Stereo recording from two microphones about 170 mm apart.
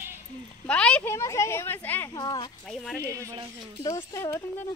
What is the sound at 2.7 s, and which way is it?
Speech, 5° left (ahead or behind).